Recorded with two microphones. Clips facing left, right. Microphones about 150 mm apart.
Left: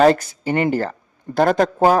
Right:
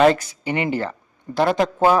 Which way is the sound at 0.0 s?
45° left (ahead or behind).